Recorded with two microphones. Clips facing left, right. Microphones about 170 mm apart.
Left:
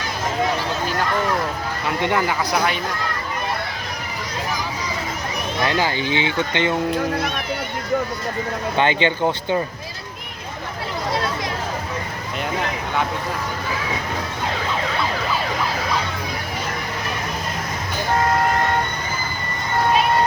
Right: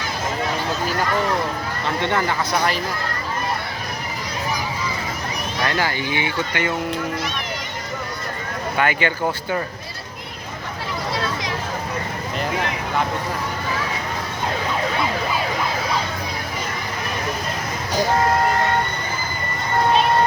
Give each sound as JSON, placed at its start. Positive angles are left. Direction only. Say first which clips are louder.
{"t": 2.0, "sound": "speech", "louder": "left 1 dB", "side_deg": 10}
{"t": 5.6, "sound": "speech", "louder": "left 2 dB", "side_deg": 15}
{"t": 8.8, "sound": "speech", "louder": "left 2 dB", "side_deg": 25}